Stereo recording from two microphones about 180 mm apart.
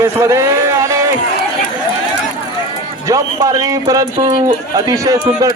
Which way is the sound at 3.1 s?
20° right (ahead or behind).